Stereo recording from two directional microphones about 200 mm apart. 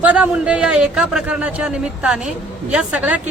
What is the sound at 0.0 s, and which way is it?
Speech, 5° right (ahead or behind).